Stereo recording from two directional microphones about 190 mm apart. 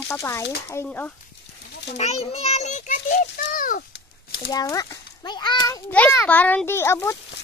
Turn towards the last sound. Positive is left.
turn(degrees=15)  # may be behind; listen again after turning